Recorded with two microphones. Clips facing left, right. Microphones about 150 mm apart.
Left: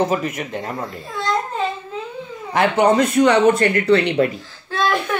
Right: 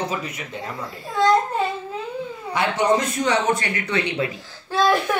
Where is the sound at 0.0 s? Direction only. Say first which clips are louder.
Left 8 dB; 50° left (ahead or behind).